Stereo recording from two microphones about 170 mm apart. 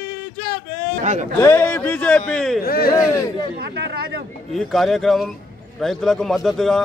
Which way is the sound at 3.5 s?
75° right (ahead or behind).